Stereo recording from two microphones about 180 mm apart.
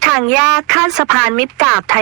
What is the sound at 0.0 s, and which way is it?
Speech, 5° right (ahead or behind).